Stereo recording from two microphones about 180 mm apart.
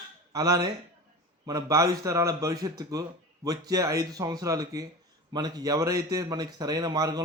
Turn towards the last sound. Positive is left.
turn(degrees=-20)  # may be behind; listen again after turning